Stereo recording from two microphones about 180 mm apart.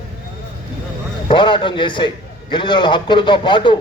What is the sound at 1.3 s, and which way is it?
A man's voice, 25° left (ahead or behind).